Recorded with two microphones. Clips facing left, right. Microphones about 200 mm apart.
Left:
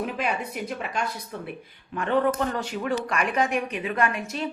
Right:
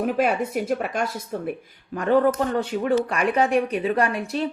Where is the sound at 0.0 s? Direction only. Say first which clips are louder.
Right 7 dB; 45° right (ahead or behind).